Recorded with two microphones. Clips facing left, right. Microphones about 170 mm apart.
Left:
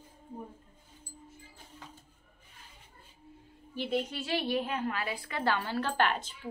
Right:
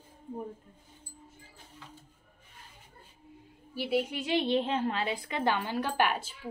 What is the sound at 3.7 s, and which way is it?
A woman's voice, 10° right (ahead or behind).